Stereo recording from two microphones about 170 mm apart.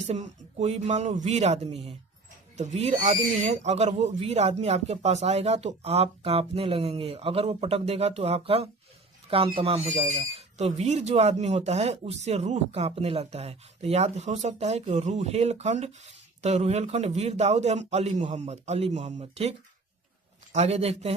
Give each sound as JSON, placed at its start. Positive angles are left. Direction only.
{"t": 0.0, "sound": "speech", "side_deg": -40}